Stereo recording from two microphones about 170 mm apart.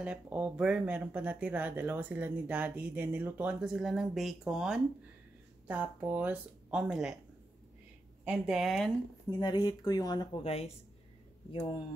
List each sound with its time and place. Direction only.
0.0 s speech: 5° right (ahead or behind)
8.3 s speech: 5° right (ahead or behind)
9.3 s speech: 25° left (ahead or behind)